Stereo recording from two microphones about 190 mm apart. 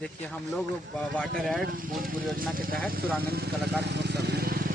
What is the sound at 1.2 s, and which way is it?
Speech, centre (ahead or behind).